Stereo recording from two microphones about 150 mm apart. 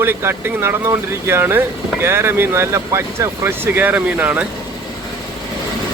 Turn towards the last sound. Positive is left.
turn(degrees=-10)  # may be behind; listen again after turning